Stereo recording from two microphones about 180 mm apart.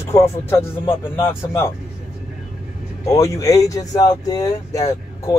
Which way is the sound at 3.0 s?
20° left (ahead or behind).